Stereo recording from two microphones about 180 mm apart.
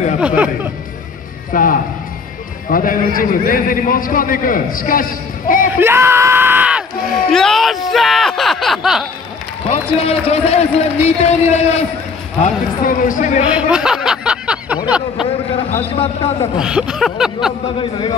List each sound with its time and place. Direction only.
0.2 s speech: 5° right (ahead or behind)
1.5 s a man's voice: 50° left (ahead or behind)
5.7 s yell: 10° right (ahead or behind)
7.2 s a sound: centre (ahead or behind)
9.7 s speech: 35° left (ahead or behind)
12.4 s a man's voice: 45° left (ahead or behind)
13.5 s a sound: 5° right (ahead or behind)
14.9 s speech: 5° right (ahead or behind)
15.7 s speech: 35° left (ahead or behind)
16.5 s a sound: 5° right (ahead or behind)